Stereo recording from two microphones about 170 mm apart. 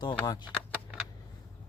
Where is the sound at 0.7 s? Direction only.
10° right (ahead or behind).